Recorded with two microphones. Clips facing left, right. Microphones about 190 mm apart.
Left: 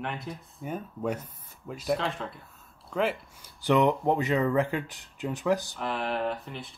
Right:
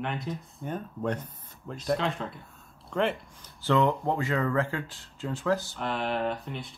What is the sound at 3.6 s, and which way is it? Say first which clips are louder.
Speech: left 1 dB; 15° left (ahead or behind).